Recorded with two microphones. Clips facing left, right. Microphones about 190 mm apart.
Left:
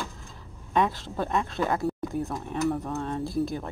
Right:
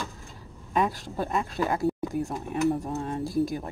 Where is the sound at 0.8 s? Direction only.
15° right (ahead or behind).